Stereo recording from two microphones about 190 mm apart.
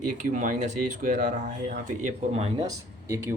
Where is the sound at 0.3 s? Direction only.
40° right (ahead or behind).